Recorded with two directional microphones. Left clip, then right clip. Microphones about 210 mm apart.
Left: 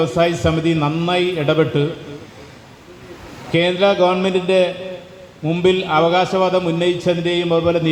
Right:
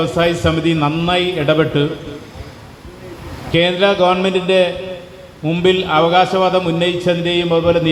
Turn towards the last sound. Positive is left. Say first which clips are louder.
# right 3 dB
turn(degrees=50)  # may be behind; listen again after turning